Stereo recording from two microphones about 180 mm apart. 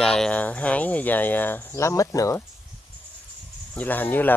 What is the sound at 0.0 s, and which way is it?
Speech, 5° left (ahead or behind).